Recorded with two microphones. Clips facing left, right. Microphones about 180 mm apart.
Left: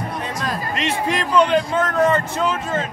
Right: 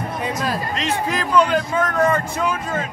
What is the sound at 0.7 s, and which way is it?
A man's voice, centre (ahead or behind).